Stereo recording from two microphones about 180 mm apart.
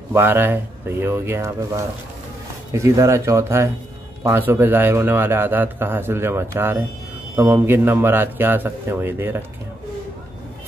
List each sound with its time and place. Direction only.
0.1 s a man's voice: 10° right (ahead or behind)